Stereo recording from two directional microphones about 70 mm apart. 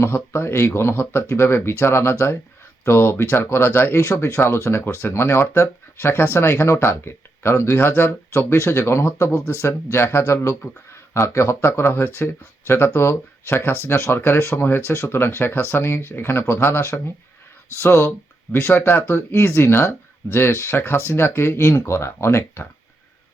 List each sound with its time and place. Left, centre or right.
0.0 s speech: left
10.5 s speech: left
11.1 s speech: left